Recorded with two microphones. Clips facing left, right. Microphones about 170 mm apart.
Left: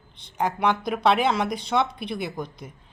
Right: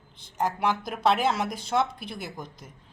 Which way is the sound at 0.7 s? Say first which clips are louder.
Left 4 dB; 60° left (ahead or behind).